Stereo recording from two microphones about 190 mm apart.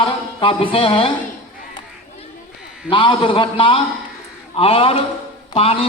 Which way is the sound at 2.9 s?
25° left (ahead or behind).